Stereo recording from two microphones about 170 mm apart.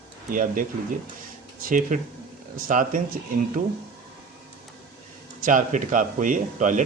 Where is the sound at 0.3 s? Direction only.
50° right (ahead or behind).